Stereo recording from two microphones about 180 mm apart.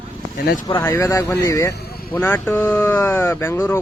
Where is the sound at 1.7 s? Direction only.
60° left (ahead or behind).